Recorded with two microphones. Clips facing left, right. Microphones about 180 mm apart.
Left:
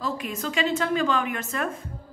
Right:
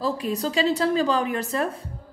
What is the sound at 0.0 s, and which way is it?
A woman's voice, 35° right (ahead or behind).